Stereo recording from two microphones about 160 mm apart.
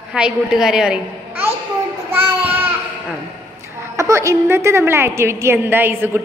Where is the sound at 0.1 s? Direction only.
5° right (ahead or behind).